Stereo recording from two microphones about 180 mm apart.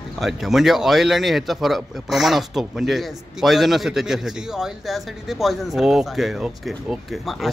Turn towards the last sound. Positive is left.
turn(degrees=0)  # may be behind; listen again after turning